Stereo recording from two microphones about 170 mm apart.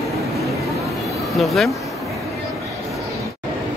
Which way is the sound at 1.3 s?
Centre (ahead or behind).